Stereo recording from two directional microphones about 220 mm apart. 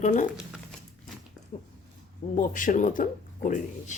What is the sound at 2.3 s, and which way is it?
Speech, 35° left (ahead or behind).